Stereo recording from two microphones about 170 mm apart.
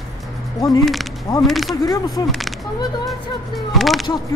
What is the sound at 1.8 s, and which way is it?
Speech, 20° left (ahead or behind).